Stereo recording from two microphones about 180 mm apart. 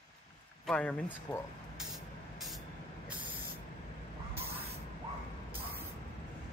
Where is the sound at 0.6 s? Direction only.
10° left (ahead or behind).